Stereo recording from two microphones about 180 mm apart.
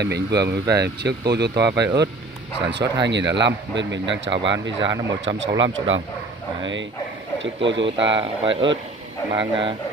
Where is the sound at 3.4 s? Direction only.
85° right.